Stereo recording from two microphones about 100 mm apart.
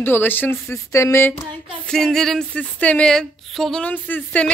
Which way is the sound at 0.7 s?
30° left (ahead or behind).